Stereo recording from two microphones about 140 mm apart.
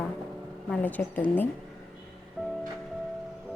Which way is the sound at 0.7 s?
10° left (ahead or behind).